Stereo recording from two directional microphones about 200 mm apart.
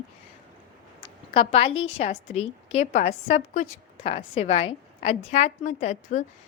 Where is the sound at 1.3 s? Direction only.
30° left (ahead or behind).